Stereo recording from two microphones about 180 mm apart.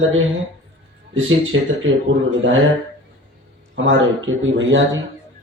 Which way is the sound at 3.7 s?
90° right.